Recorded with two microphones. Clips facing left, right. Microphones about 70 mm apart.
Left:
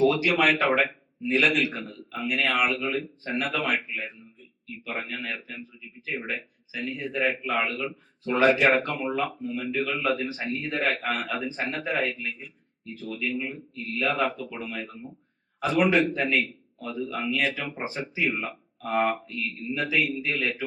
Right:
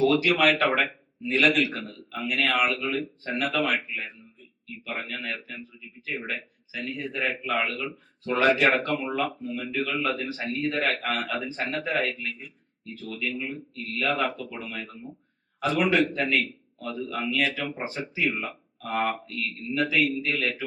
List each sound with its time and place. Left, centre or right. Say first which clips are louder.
0.0 s a man's voice: even; centre
6.7 s a man's voice: left 2 dB; centre
8.2 s a man's voice: left 1 dB; centre
10.2 s a man's voice: even; centre
19.7 s a man's voice: right 2 dB; centre